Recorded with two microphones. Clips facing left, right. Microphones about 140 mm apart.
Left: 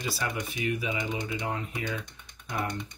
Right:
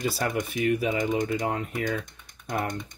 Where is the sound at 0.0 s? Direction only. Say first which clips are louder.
Right 5 dB; 45° right (ahead or behind).